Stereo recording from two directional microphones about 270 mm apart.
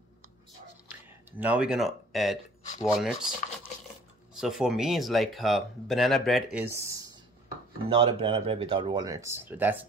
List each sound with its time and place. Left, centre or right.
1.4 s speech: centre
7.9 s speech: centre